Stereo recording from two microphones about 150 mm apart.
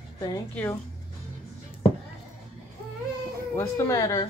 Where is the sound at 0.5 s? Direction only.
15° left (ahead or behind).